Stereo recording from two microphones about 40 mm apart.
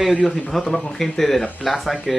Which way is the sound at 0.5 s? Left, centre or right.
Centre.